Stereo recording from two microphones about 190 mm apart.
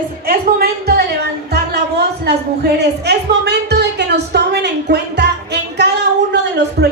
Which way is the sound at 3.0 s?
60° right (ahead or behind).